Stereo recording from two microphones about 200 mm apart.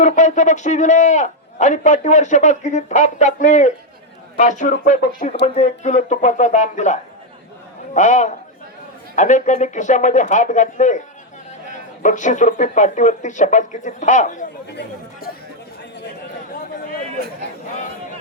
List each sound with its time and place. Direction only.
0.0 s a man's voice: 40° left (ahead or behind)